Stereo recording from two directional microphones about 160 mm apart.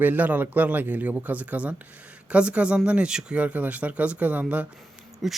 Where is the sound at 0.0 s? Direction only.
10° right (ahead or behind).